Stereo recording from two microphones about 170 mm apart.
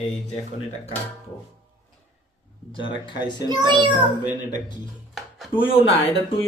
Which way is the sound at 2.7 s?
30° left (ahead or behind).